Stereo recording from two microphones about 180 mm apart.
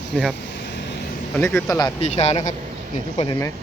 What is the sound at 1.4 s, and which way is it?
Speech, 10° left (ahead or behind).